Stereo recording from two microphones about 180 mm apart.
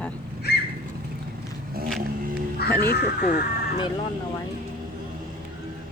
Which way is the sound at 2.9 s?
60° left (ahead or behind).